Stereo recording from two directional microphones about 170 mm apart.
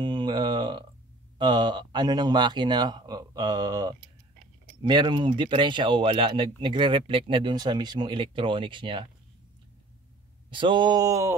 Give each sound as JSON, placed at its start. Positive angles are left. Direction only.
{"t": 0.0, "sound": "a sound", "side_deg": -30}
{"t": 1.4, "sound": "speech", "side_deg": -25}
{"t": 10.5, "sound": "speech", "side_deg": -30}